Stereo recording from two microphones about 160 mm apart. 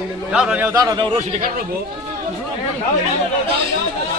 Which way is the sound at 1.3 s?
60° right (ahead or behind).